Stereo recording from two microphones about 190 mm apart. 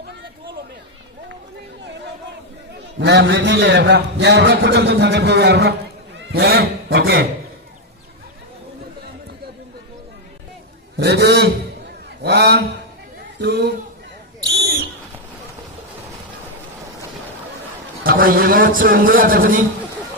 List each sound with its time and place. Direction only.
3.0 s a man's voice: 65° right (ahead or behind)
10.9 s a man's voice: 60° right (ahead or behind)
14.5 s a sound: 55° right (ahead or behind)
18.0 s a man's voice: 50° right (ahead or behind)